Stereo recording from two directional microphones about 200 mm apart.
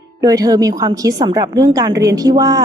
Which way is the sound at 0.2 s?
20° right (ahead or behind).